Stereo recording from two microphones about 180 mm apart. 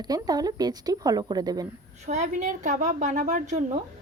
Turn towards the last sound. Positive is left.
turn(degrees=-45)  # may be behind; listen again after turning